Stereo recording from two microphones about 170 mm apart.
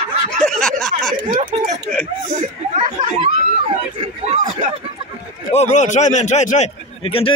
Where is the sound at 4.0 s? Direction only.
40° right (ahead or behind).